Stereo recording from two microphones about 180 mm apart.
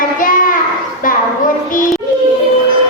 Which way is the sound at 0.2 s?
50° left (ahead or behind).